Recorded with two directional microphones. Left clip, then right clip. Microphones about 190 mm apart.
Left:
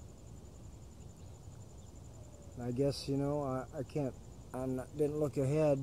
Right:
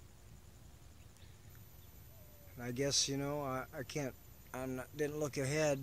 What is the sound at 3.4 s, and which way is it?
Speech, 25° right (ahead or behind).